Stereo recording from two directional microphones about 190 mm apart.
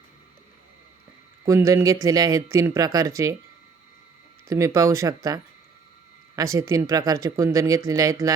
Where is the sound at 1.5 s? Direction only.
15° right (ahead or behind).